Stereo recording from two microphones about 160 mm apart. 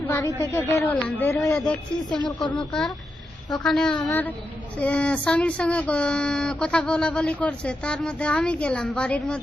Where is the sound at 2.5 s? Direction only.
5° left (ahead or behind).